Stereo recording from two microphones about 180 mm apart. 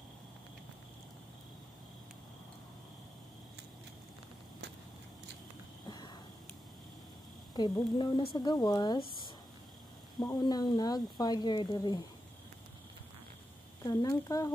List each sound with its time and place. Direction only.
5.9 s a sound: 25° left (ahead or behind)
7.5 s speech: 25° left (ahead or behind)
10.1 s speech: 20° left (ahead or behind)
13.8 s speech: 20° left (ahead or behind)